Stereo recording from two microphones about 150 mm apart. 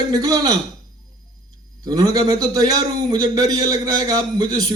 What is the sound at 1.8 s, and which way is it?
A man's voice, 25° right (ahead or behind).